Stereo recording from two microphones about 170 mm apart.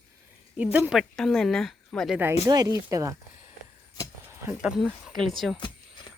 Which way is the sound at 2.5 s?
25° right (ahead or behind).